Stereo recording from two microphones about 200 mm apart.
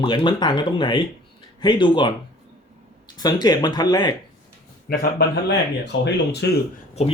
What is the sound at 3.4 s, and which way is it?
Speech, 20° left (ahead or behind).